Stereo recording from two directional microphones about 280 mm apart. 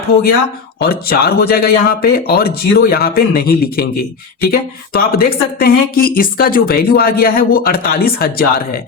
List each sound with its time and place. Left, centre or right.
0.8 s speech: left